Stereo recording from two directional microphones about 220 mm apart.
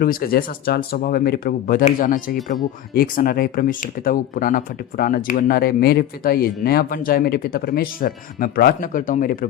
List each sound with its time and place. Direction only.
0.0 s speech: 45° left (ahead or behind)